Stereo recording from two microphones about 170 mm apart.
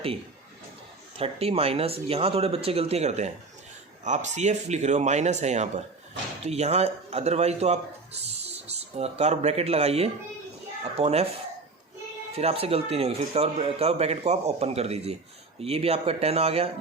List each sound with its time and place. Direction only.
1.1 s a man's voice: 35° right (ahead or behind)
12.4 s a man's voice: 35° right (ahead or behind)